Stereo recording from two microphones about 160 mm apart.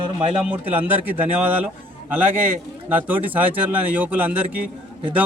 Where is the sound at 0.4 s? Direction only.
10° right (ahead or behind).